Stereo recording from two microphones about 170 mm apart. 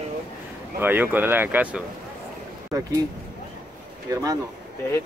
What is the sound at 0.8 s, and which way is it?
Speech, 10° right (ahead or behind).